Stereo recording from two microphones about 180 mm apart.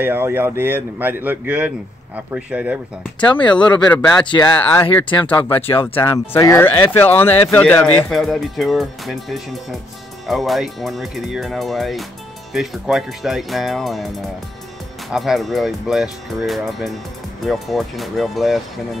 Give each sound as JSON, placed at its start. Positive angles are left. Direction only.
{"t": 0.0, "sound": "speech", "side_deg": -10}
{"t": 3.2, "sound": "speech", "side_deg": 25}
{"t": 4.6, "sound": "speech", "side_deg": 10}
{"t": 15.0, "sound": "speech", "side_deg": 0}